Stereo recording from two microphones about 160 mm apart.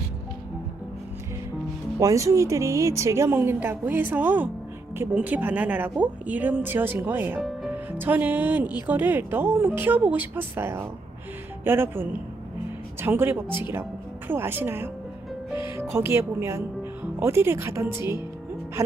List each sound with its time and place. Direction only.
2.0 s a woman's voice: 20° right (ahead or behind)
7.3 s music: centre (ahead or behind)
7.7 s a woman's voice: 10° right (ahead or behind)